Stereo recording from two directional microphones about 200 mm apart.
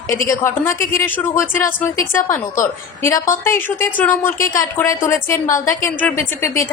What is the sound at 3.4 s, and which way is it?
A woman's voice, 10° left (ahead or behind).